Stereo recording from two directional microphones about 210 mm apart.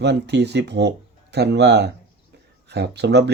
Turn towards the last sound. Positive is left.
turn(degrees=-55)  # may be behind; listen again after turning